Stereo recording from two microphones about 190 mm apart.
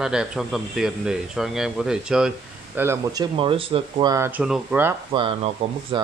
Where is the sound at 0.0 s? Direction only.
5° right (ahead or behind); by 4.1 s 30° right (ahead or behind).